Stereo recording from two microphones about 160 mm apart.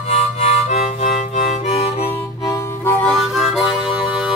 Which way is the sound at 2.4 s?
20° left (ahead or behind).